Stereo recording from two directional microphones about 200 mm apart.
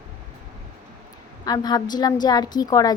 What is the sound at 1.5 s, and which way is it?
A woman's voice, 20° left (ahead or behind).